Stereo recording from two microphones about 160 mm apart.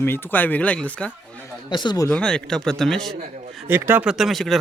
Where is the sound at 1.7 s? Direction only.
30° left (ahead or behind).